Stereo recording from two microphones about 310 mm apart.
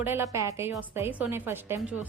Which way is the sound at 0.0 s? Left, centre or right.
Centre.